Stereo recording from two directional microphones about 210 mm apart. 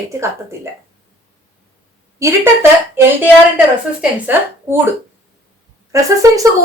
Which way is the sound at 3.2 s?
5° right (ahead or behind).